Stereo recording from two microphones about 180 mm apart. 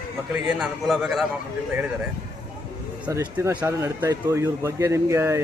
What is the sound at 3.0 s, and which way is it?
Speech, 10° right (ahead or behind).